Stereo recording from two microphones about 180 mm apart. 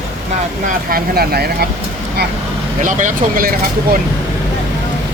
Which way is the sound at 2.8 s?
45° right (ahead or behind).